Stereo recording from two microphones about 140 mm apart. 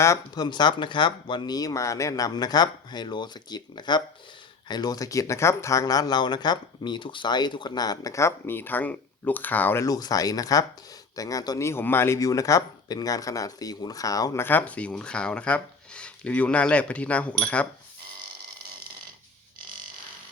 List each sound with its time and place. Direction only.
0.0 s speech: 25° left (ahead or behind)
14.4 s speech: 10° left (ahead or behind)